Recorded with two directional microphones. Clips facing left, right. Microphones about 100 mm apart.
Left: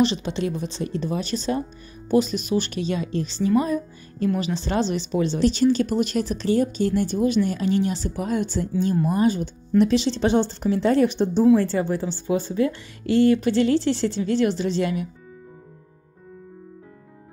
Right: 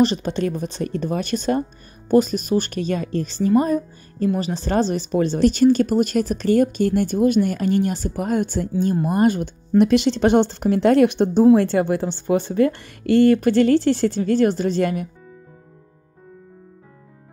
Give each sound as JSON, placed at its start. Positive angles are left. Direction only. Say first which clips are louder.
{"t": 0.0, "sound": "speech", "louder": "right 3 dB", "side_deg": -45}